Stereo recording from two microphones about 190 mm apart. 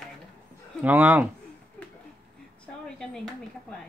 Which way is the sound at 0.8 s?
10° right (ahead or behind).